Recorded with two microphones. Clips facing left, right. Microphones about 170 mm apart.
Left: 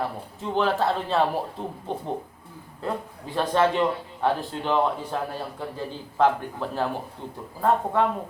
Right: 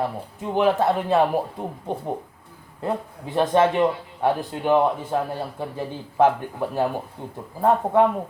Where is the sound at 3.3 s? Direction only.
15° right (ahead or behind).